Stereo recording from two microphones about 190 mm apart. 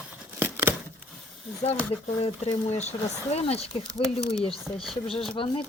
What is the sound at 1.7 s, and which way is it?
Speech, 30° left (ahead or behind).